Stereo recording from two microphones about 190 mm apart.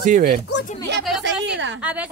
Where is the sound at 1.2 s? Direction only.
75° right (ahead or behind).